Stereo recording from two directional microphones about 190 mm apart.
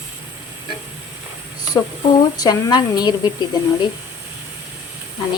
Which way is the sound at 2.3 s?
20° left (ahead or behind).